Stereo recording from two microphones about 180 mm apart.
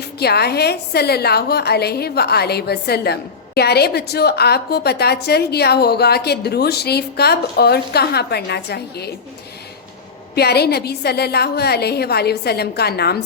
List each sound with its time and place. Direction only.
0.2 s a woman's voice: 65° left (ahead or behind)
10.3 s a woman's voice: 65° left (ahead or behind)